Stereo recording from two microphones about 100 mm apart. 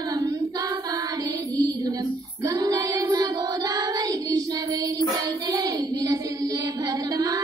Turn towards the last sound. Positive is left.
turn(degrees=-40)  # may be behind; listen again after turning